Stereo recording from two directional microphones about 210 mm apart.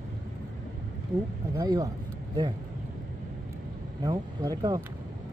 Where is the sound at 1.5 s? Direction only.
15° right (ahead or behind).